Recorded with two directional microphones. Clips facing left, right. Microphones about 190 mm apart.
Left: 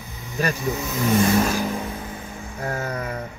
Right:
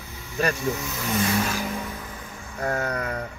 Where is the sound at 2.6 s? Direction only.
5° left (ahead or behind).